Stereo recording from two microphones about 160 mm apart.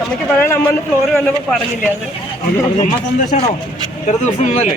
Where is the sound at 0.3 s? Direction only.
15° left (ahead or behind).